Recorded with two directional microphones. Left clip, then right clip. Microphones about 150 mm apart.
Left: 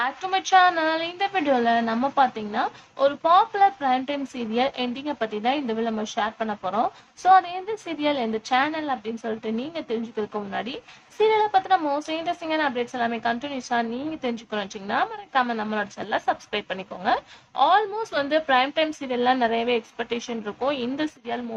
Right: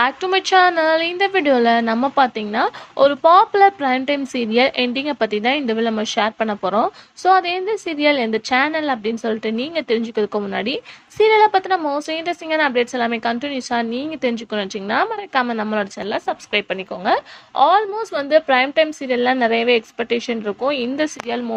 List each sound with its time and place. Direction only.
0.0 s a woman's voice: 45° right (ahead or behind)